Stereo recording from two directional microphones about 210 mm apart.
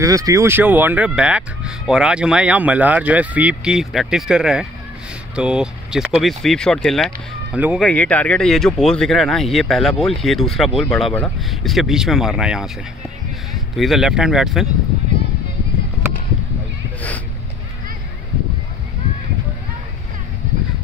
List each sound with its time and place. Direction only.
0.0 s speech: 15° right (ahead or behind)
7.9 s speech: 5° left (ahead or behind)
13.7 s speech: centre (ahead or behind)